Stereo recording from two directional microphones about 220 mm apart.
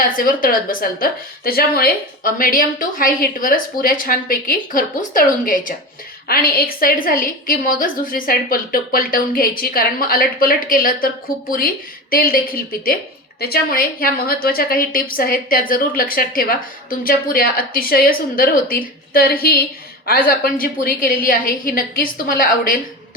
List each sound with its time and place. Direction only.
0.0 s a woman's voice: 40° left (ahead or behind)